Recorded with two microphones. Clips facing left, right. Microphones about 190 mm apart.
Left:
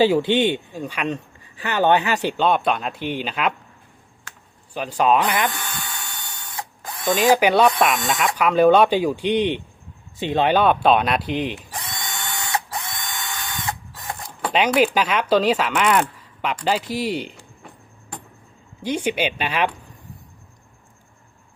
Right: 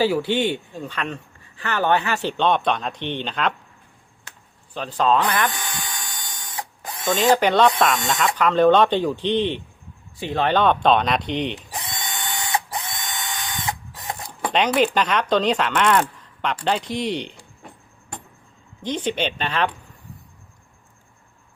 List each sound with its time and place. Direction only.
0.0 s speech: 20° left (ahead or behind)
2.4 s speech: 5° left (ahead or behind)
4.7 s speech: 10° left (ahead or behind)
5.5 s printer: 20° right (ahead or behind)
7.1 s speech: 10° left (ahead or behind)
11.7 s drill: 20° right (ahead or behind)
14.5 s speech: 5° left (ahead or behind)
18.8 s speech: 10° left (ahead or behind)